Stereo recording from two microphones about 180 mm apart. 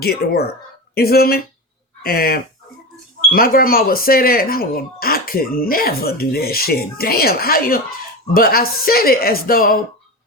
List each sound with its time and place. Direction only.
0.0 s speech: 60° left (ahead or behind)